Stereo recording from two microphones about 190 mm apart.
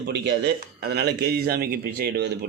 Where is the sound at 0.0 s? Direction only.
60° right (ahead or behind).